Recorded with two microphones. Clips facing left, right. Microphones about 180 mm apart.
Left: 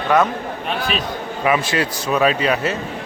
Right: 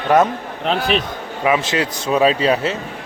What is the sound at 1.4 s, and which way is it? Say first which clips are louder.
Speech: right 1 dB; 20° right (ahead or behind).